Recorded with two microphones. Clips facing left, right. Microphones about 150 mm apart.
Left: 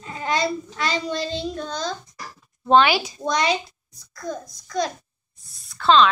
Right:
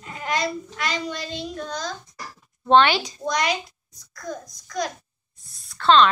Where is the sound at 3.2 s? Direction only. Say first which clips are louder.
Left 2 dB; 30° left (ahead or behind).